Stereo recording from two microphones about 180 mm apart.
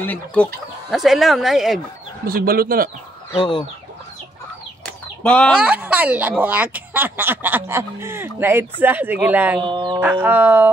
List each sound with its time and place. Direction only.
0.0 s speech: 10° left (ahead or behind)
2.2 s speech: 55° right (ahead or behind)
5.2 s speech: 10° left (ahead or behind)
5.5 s speech: 5° right (ahead or behind)
9.6 s speech: 25° right (ahead or behind)
9.9 s speech: 10° right (ahead or behind)